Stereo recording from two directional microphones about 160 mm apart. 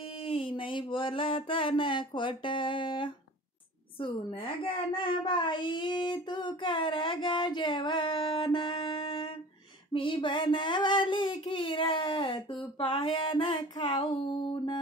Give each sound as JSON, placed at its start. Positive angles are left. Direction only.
{"t": 0.2, "sound": "a sound", "side_deg": 35}
{"t": 4.0, "sound": "a woman's voice", "side_deg": 30}
{"t": 4.9, "sound": "child singing", "side_deg": 30}